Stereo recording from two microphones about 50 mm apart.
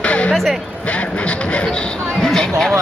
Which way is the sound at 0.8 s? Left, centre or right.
Left.